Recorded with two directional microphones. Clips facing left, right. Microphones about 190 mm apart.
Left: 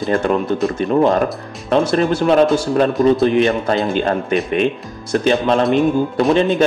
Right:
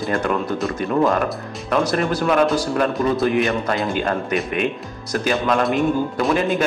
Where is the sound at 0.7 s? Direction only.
30° left (ahead or behind).